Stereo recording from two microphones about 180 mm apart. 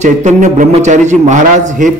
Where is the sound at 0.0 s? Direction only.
40° right (ahead or behind).